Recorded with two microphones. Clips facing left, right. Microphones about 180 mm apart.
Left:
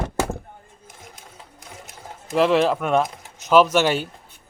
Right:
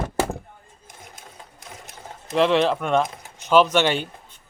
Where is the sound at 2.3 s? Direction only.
5° left (ahead or behind).